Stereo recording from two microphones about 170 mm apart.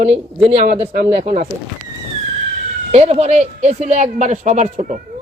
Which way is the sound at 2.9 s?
40° right (ahead or behind).